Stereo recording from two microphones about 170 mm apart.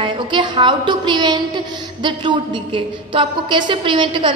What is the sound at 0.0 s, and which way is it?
A woman's voice, 30° right (ahead or behind).